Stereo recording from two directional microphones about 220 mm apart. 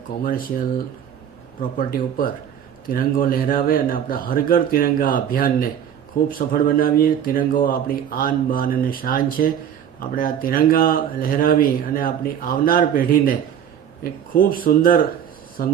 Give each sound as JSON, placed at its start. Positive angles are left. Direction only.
{"t": 0.2, "sound": "speech", "side_deg": 40}
{"t": 1.8, "sound": "speech", "side_deg": 40}